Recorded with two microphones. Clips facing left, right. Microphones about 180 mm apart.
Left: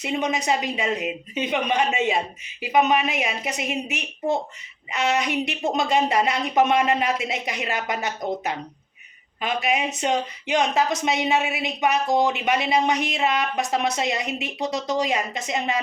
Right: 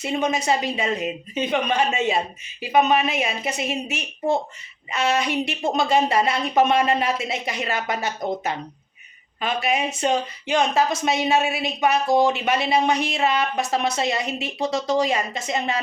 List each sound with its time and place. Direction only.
0.0 s a woman's voice: 15° left (ahead or behind)